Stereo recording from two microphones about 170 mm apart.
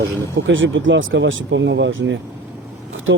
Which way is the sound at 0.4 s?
90° right.